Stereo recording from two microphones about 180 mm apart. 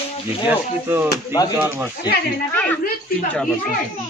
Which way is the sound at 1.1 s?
20° left (ahead or behind).